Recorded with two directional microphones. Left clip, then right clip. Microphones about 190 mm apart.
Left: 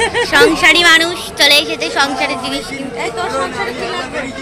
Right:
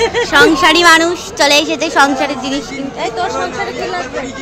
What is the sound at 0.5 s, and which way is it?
A woman's voice, 30° right (ahead or behind).